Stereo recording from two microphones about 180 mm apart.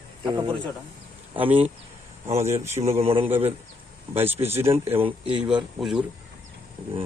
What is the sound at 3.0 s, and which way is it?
Speech, 30° right (ahead or behind).